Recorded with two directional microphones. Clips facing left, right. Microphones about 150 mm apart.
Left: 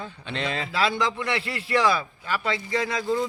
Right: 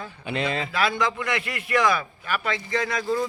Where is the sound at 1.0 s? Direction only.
30° left (ahead or behind).